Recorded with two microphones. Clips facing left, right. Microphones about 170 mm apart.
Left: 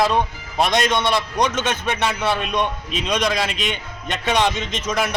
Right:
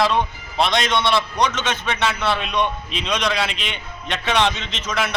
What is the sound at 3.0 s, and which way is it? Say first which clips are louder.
Speech: left 2 dB; 10° left (ahead or behind).